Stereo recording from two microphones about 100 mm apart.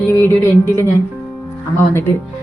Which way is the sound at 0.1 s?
25° left (ahead or behind).